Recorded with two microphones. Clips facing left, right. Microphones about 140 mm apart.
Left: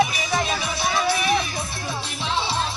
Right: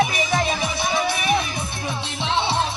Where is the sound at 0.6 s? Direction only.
50° right (ahead or behind).